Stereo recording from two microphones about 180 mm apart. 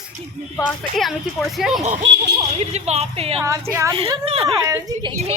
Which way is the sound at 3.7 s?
15° right (ahead or behind).